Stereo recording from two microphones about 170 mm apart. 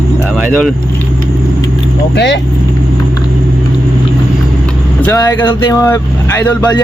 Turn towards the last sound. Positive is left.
turn(degrees=15)  # may be behind; listen again after turning